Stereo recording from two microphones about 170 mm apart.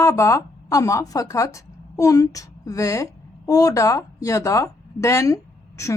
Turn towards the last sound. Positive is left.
turn(degrees=20)  # may be behind; listen again after turning